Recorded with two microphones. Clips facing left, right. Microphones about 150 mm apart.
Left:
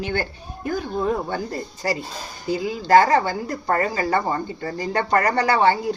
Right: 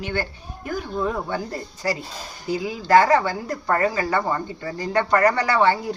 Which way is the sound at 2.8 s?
35° left (ahead or behind).